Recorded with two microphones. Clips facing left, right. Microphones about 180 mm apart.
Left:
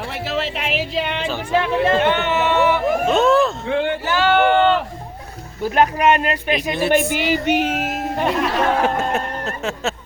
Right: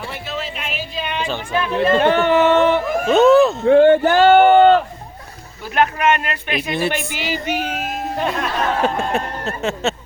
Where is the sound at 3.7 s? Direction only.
50° right (ahead or behind).